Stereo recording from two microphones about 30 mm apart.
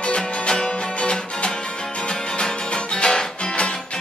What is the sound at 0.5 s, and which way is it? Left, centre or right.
Music, left.